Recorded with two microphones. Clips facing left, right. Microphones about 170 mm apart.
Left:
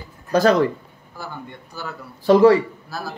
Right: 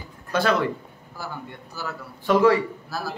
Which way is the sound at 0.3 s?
40° left (ahead or behind).